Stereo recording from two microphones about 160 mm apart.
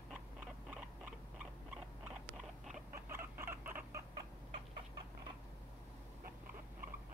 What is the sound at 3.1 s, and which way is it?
Chicken, 15° right (ahead or behind).